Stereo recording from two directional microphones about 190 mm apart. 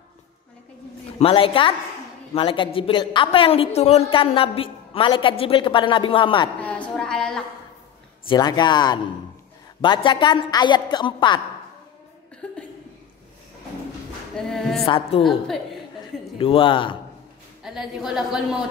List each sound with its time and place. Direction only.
1.2 s a woman's voice: 30° left (ahead or behind)
6.6 s a sound: 5° left (ahead or behind)
8.3 s a woman's voice: 20° left (ahead or behind)
12.4 s a sound: 5° left (ahead or behind)
14.3 s a woman's voice: 5° left (ahead or behind)
14.8 s a woman's voice: 30° left (ahead or behind)
15.2 s a woman's voice: centre (ahead or behind)
16.3 s a woman's voice: 30° left (ahead or behind)
17.6 s a woman's voice: centre (ahead or behind)